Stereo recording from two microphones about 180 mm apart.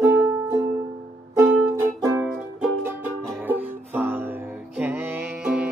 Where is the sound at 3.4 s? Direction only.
10° right (ahead or behind).